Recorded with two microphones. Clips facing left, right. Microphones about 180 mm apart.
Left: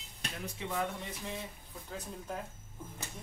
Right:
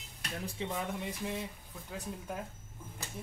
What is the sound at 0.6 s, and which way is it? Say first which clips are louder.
Speech: right 2 dB; 25° right (ahead or behind).